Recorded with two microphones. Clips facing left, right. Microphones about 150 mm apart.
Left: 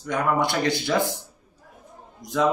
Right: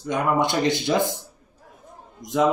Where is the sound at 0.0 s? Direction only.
20° right (ahead or behind).